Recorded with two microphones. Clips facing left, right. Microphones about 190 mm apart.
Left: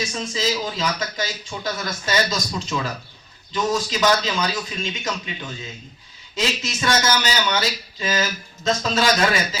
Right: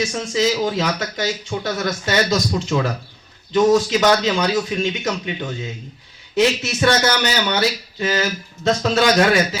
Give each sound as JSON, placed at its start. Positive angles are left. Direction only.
{"t": 0.1, "sound": "speech", "side_deg": -65}